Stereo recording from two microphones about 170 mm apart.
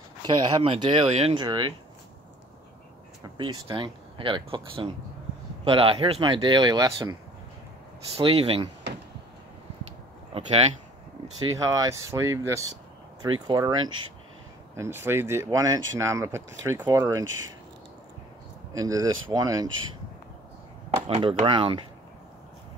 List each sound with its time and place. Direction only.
0.6 s speech: 30° right (ahead or behind)
3.3 s speech: 25° right (ahead or behind)
8.2 s speech: 30° right (ahead or behind)
10.3 s speech: 40° right (ahead or behind)
11.5 s speech: 20° right (ahead or behind)
18.7 s speech: 20° right (ahead or behind)
21.1 s speech: 35° right (ahead or behind)